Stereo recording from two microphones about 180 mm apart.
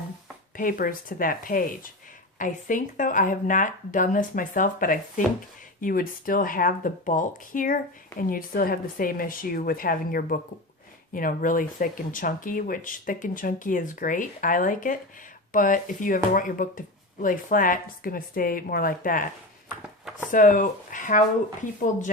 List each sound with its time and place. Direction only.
0.5 s speech: 50° left (ahead or behind)
20.3 s speech: 45° left (ahead or behind)